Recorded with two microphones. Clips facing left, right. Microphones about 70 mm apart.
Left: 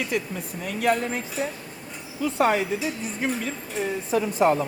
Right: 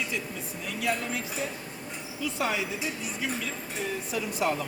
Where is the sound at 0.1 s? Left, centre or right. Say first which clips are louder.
Left 6 dB; left.